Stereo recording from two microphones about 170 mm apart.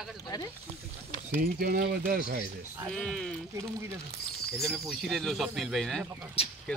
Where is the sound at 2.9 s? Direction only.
5° left (ahead or behind).